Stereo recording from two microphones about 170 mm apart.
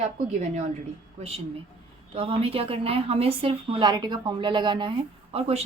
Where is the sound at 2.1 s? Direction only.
35° right (ahead or behind).